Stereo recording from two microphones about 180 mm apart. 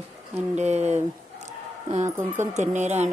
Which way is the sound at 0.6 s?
40° right (ahead or behind).